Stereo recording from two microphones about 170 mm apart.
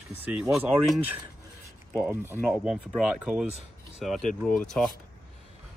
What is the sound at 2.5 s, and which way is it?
Speech, 5° right (ahead or behind).